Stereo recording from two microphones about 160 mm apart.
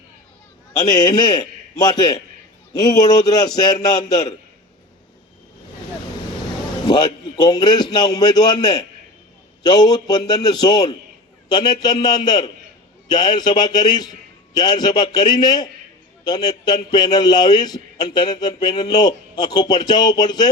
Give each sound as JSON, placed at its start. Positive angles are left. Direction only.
{"t": 0.8, "sound": "a man's voice", "side_deg": 25}
{"t": 6.8, "sound": "a man's voice", "side_deg": 25}